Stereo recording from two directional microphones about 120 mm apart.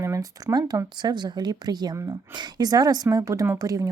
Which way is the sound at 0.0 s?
25° right (ahead or behind).